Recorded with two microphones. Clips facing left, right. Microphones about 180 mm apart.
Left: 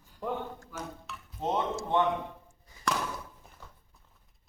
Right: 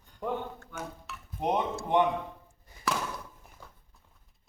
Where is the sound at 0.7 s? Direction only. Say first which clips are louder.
Right 1 dB; 10° right (ahead or behind).